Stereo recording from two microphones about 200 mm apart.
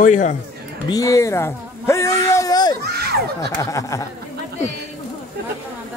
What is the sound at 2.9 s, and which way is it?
Speech, 50° right (ahead or behind).